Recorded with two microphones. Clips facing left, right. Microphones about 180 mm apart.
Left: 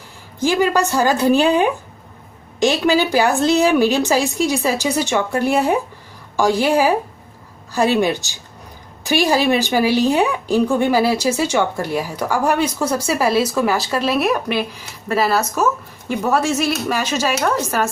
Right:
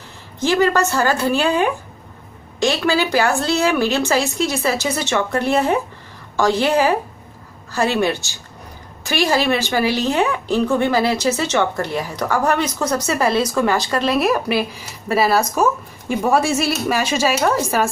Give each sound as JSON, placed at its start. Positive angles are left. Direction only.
{"t": 0.4, "sound": "a woman's voice", "side_deg": 10}